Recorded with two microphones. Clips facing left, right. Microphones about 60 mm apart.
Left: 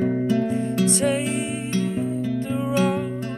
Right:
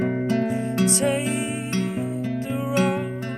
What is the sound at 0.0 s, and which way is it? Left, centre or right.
Music, right.